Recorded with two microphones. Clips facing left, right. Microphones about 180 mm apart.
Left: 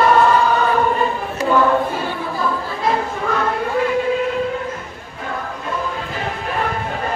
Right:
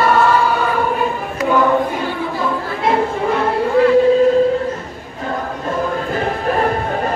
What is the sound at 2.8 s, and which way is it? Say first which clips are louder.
Music: right 4 dB; 30° right (ahead or behind).